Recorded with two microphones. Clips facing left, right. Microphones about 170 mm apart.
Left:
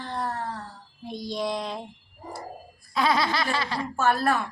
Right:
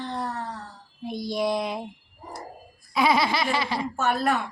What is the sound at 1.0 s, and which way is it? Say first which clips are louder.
Speech: right 3 dB; 10° right (ahead or behind).